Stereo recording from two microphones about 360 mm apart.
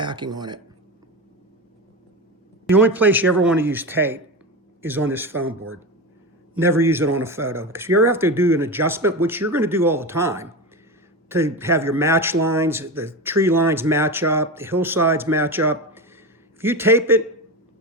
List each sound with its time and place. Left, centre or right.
0.0 s speech: centre
2.6 s a man's voice: centre
5.4 s a man's voice: right
6.5 s a man's voice: centre